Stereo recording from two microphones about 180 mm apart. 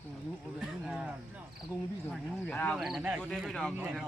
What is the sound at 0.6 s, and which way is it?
Speech, centre (ahead or behind).